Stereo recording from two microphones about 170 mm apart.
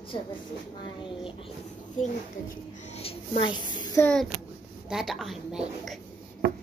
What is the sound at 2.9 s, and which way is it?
A woman's voice, 35° left (ahead or behind).